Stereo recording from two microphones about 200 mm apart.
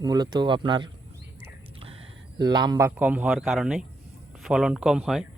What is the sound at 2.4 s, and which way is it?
A man's voice, 20° right (ahead or behind).